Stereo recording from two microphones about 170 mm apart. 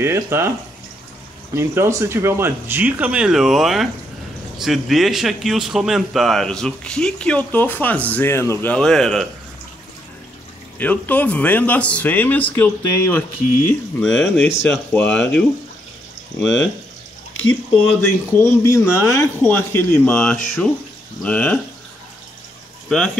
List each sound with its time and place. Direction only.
0.0 s speech: 15° right (ahead or behind)
1.5 s speech: 15° right (ahead or behind); by 9.3 s centre (ahead or behind)
10.8 s speech: 10° left (ahead or behind)
18.6 s speech: 15° left (ahead or behind)
22.8 s speech: 5° left (ahead or behind)